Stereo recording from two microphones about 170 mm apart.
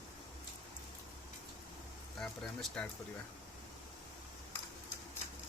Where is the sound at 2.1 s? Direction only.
5° left (ahead or behind).